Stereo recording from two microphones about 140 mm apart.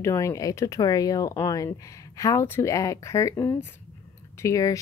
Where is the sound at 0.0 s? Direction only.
20° left (ahead or behind).